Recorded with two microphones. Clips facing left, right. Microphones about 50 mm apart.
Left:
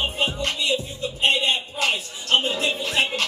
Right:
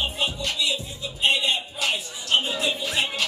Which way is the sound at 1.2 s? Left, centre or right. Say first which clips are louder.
Left 1 dB; left.